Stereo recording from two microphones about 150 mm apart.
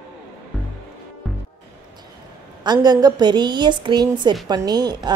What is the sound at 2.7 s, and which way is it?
A woman's voice, 25° right (ahead or behind).